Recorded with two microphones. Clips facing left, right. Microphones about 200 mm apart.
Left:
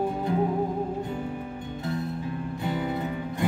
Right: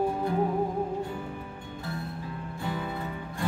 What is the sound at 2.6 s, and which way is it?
Music, 20° left (ahead or behind).